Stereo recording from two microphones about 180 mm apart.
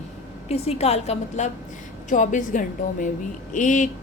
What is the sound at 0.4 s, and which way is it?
A woman's voice, 35° left (ahead or behind).